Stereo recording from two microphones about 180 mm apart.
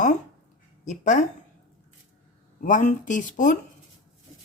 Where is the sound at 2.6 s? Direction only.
45° left (ahead or behind).